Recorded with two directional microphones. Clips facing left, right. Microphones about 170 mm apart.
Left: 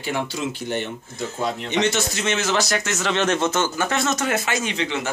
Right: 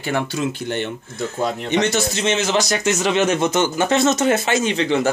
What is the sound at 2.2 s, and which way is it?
Speech, 20° right (ahead or behind).